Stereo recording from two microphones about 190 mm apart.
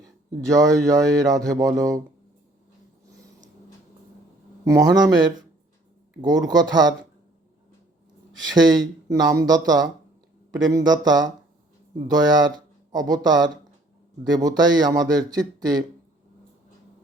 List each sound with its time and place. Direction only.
0.0 s speech: 15° right (ahead or behind)
4.6 s speech: 20° right (ahead or behind)
8.5 s speech: 20° right (ahead or behind)